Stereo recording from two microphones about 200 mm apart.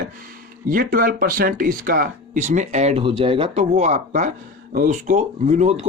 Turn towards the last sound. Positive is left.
turn(degrees=-35)  # may be behind; listen again after turning